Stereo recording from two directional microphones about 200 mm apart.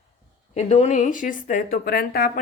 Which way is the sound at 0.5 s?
35° left (ahead or behind).